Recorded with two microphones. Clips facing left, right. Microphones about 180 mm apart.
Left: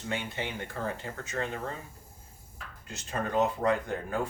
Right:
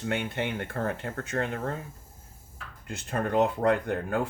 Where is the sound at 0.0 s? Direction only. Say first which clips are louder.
Right 5 dB; 60° right (ahead or behind).